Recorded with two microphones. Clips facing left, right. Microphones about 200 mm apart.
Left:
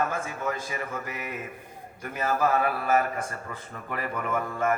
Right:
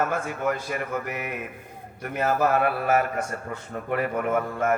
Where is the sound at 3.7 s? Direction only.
50° right (ahead or behind).